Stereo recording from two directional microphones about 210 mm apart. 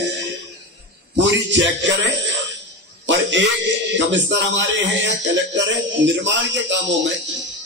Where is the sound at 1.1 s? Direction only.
60° right (ahead or behind).